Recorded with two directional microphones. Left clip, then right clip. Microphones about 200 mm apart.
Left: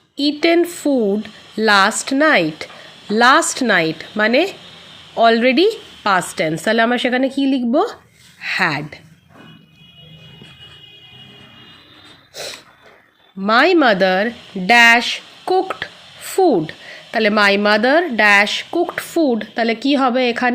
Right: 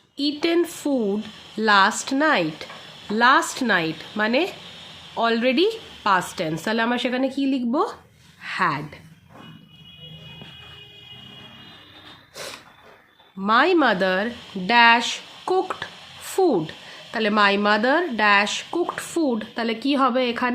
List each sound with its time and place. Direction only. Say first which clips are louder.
0.2 s a woman's voice: left 7 dB; 20° left (ahead or behind)
12.3 s a sound: left 6 dB; 15° left (ahead or behind)
13.4 s a woman's voice: left 5 dB; 20° left (ahead or behind)